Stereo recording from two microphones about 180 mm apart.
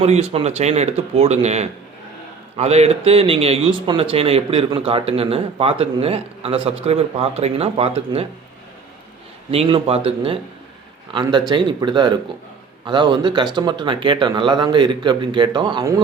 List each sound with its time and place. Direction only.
0.0 s a man's voice: 35° right (ahead or behind)
9.5 s a man's voice: 30° right (ahead or behind)